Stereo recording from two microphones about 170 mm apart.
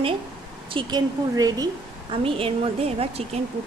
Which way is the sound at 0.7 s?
30° right (ahead or behind).